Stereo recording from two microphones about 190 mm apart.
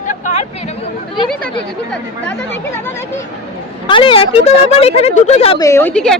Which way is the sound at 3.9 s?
25° left (ahead or behind).